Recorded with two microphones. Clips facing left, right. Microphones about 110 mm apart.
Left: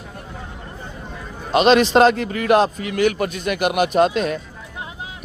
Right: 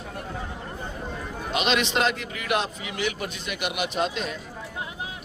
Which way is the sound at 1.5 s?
40° left (ahead or behind).